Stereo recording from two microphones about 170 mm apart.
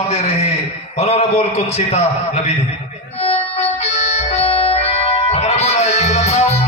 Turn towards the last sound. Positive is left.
turn(degrees=40)  # may be behind; listen again after turning